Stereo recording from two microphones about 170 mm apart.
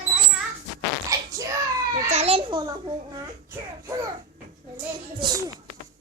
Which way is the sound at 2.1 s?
35° right (ahead or behind).